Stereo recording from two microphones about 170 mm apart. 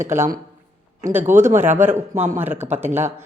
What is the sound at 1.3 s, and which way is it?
A woman's voice, 15° right (ahead or behind).